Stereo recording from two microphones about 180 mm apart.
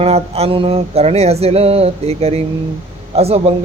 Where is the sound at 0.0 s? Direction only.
35° right (ahead or behind).